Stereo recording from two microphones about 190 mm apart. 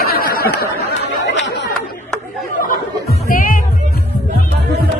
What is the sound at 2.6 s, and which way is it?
Music, 45° left (ahead or behind).